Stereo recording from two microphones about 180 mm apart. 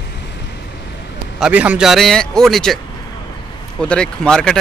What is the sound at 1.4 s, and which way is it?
A man's voice, 10° right (ahead or behind).